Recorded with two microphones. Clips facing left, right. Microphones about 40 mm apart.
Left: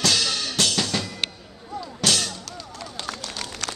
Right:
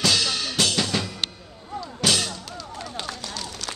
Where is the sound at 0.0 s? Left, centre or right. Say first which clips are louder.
Even; centre.